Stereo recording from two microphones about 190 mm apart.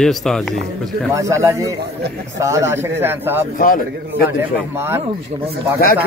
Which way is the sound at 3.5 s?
45° left (ahead or behind).